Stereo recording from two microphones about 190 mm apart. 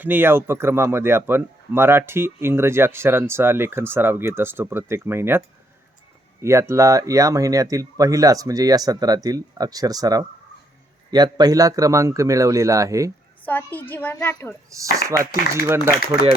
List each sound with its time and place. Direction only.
0.0 s speech: 10° right (ahead or behind)
6.4 s speech: 15° right (ahead or behind)
13.4 s a child's voice: 10° left (ahead or behind)
14.7 s speech: 15° right (ahead or behind)